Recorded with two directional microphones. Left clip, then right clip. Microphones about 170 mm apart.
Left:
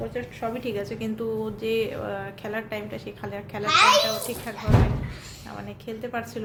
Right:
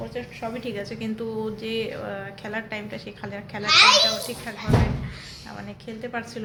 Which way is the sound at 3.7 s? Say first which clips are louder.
Right 2 dB; 60° left (ahead or behind).